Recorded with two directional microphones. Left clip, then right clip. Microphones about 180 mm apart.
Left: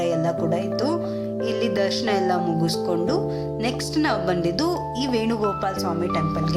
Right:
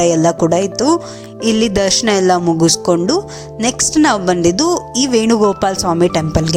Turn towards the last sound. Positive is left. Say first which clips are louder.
# right 9 dB
turn(degrees=-45)  # may be behind; listen again after turning